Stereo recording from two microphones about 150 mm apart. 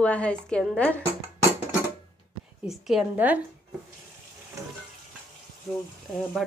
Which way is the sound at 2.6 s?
5° right (ahead or behind).